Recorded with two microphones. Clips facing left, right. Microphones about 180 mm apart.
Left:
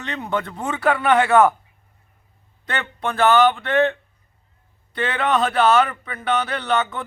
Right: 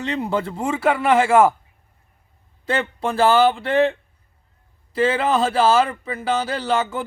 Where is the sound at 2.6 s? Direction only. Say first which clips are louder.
Right 4 dB; 30° right (ahead or behind).